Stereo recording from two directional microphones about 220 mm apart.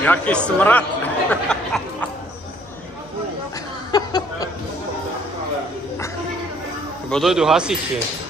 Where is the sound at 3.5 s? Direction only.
15° left (ahead or behind).